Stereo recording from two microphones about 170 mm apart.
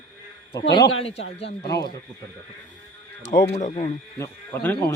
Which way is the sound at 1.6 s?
25° left (ahead or behind).